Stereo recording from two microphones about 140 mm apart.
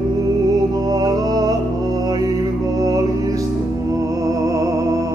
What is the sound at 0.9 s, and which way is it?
Music, 30° right (ahead or behind).